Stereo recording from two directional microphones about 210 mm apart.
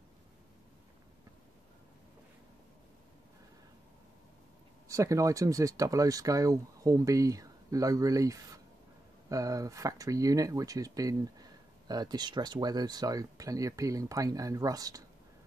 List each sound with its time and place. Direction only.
4.8 s speech: 15° right (ahead or behind)